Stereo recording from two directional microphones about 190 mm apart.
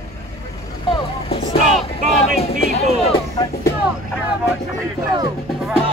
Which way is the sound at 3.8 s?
5° right (ahead or behind).